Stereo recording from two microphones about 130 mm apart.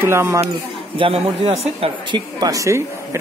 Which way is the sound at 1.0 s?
45° right (ahead or behind).